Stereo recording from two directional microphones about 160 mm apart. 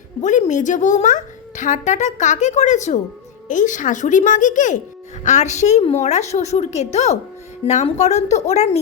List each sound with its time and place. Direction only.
0.2 s a woman's voice: 50° left (ahead or behind)